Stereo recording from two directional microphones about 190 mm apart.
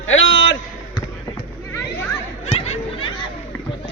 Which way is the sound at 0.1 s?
75° left (ahead or behind).